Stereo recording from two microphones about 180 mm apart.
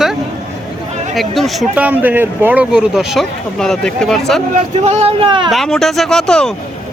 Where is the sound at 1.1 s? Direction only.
Centre (ahead or behind).